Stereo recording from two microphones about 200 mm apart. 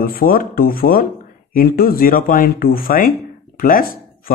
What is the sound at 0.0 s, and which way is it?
Speech, 45° left (ahead or behind).